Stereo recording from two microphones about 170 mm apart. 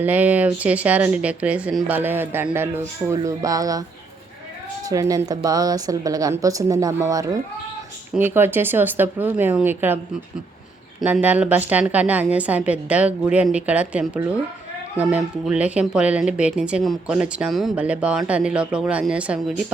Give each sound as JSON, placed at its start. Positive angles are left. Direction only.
{"t": 0.0, "sound": "a woman's voice", "side_deg": -10}
{"t": 4.9, "sound": "a woman's voice", "side_deg": -20}
{"t": 11.0, "sound": "speech", "side_deg": -10}